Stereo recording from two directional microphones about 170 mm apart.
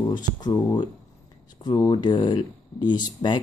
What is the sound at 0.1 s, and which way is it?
Speech, 25° left (ahead or behind).